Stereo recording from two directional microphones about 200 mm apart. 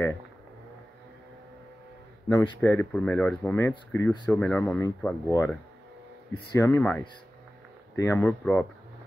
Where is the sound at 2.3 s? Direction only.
10° left (ahead or behind).